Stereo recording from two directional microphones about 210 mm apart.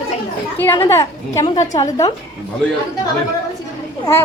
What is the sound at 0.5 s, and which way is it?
Speech, 10° left (ahead or behind).